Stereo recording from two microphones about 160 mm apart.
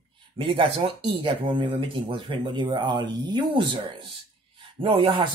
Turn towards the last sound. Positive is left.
turn(degrees=-30)  # may be behind; listen again after turning